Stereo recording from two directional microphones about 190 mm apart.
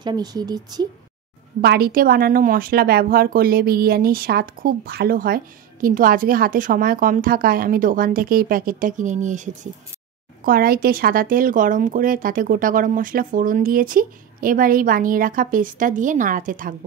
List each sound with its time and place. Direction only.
0.0 s speech: 20° right (ahead or behind)
1.6 s speech: 55° right (ahead or behind)